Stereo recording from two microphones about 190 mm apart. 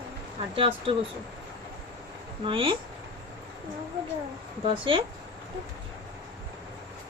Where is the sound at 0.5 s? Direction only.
30° right (ahead or behind).